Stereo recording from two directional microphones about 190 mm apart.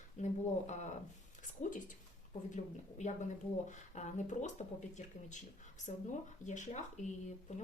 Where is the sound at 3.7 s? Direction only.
40° left (ahead or behind).